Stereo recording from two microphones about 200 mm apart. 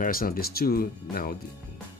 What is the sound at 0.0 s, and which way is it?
Speech, 45° left (ahead or behind).